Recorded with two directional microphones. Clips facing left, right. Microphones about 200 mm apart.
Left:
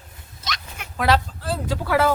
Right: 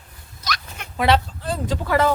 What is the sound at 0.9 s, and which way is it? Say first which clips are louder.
Speech: right 2 dB; centre (ahead or behind).